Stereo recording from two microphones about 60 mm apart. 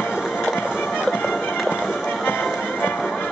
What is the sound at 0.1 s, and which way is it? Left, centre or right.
Music, centre.